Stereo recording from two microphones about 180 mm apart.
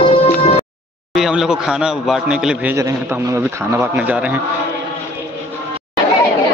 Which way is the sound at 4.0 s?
10° right (ahead or behind).